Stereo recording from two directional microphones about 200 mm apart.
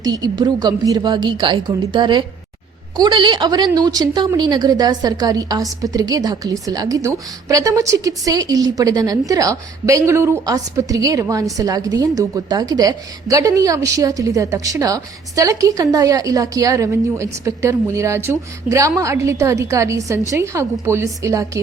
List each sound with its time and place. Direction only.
0.0 s a woman's voice: 20° right (ahead or behind)